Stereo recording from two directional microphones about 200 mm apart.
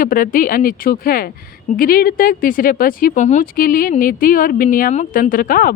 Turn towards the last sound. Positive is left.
turn(degrees=45)  # may be behind; listen again after turning